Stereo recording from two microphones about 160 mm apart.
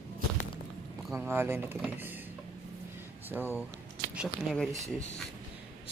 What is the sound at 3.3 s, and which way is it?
Speech, 10° right (ahead or behind).